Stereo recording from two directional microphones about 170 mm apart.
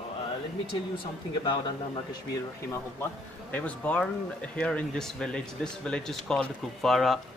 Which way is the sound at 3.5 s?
10° left (ahead or behind).